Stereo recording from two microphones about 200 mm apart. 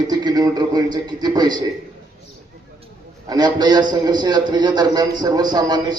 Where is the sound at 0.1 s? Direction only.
20° right (ahead or behind).